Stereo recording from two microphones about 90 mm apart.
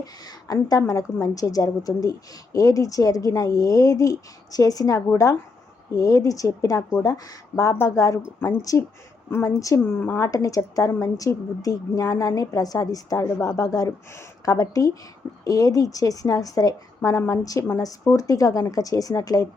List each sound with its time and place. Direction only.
0.0 s a woman's voice: 45° left (ahead or behind)
8.4 s speech: 25° left (ahead or behind)
9.3 s a woman's voice: 35° left (ahead or behind)
10.0 s speech: 25° left (ahead or behind)
10.2 s a woman's voice: 40° left (ahead or behind)